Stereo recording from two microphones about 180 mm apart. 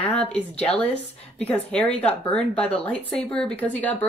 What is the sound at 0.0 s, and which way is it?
A woman's voice, 5° left (ahead or behind).